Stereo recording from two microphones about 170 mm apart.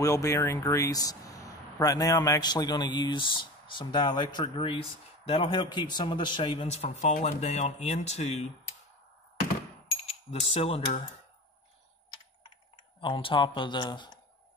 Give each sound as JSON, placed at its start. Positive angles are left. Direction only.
{"t": 0.0, "sound": "a man's voice", "side_deg": 20}
{"t": 10.4, "sound": "a man's voice", "side_deg": 35}
{"t": 13.0, "sound": "speech", "side_deg": 30}